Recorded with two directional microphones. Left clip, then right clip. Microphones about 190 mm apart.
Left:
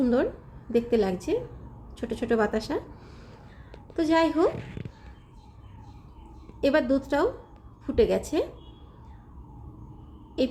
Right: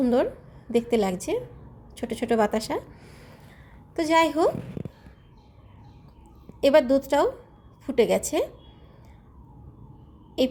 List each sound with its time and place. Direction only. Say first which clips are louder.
0.0 s a woman's voice: right 2 dB; 5° right (ahead or behind)
4.5 s a child's voice: right 2 dB; 40° right (ahead or behind)
6.6 s a woman's voice: right 5 dB; 10° right (ahead or behind)
10.4 s a woman's voice: right 3 dB; 10° right (ahead or behind)